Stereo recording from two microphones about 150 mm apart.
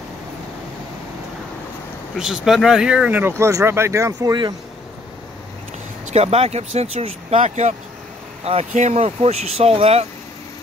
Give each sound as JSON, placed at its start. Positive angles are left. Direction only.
{"t": 2.1, "sound": "speech", "side_deg": -5}
{"t": 6.0, "sound": "speech", "side_deg": -45}